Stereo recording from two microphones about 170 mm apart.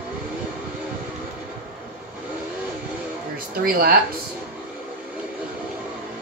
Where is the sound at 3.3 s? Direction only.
60° right (ahead or behind).